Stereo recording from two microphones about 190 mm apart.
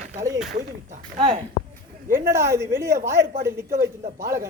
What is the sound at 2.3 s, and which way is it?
A man's voice, 15° right (ahead or behind).